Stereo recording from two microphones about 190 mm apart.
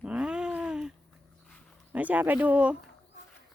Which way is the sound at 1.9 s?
10° right (ahead or behind).